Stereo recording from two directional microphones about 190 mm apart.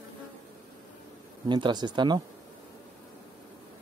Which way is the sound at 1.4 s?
25° right (ahead or behind).